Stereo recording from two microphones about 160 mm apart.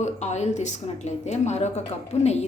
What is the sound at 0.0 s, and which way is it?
A woman's voice, 45° left (ahead or behind).